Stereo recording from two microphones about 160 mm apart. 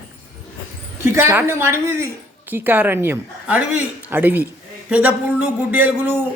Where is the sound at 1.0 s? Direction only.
15° right (ahead or behind).